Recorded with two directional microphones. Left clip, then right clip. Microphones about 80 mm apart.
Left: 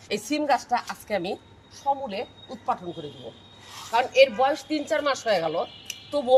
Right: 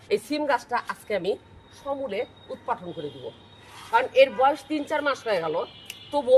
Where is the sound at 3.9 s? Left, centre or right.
Centre.